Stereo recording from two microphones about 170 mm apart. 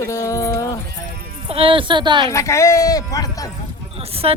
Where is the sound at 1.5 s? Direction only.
35° right (ahead or behind).